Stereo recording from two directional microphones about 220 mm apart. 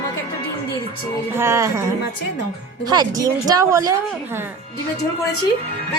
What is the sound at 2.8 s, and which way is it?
Speech, 15° right (ahead or behind).